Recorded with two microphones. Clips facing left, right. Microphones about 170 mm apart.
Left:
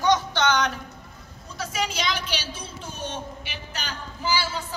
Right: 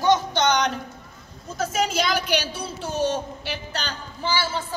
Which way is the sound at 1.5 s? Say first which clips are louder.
Right 6 dB; 45° right (ahead or behind).